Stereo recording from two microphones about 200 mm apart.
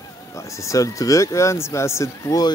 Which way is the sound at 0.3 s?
15° left (ahead or behind).